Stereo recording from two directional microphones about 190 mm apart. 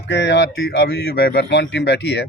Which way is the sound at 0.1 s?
65° left (ahead or behind).